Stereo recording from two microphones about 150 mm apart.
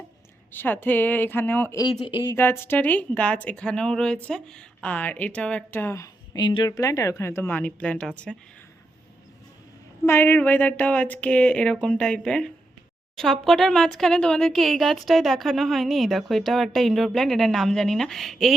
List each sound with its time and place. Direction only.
0.5 s speech: 15° left (ahead or behind)
1.8 s speech: 35° left (ahead or behind)
2.3 s speech: 15° left (ahead or behind)
10.1 s speech: 15° left (ahead or behind)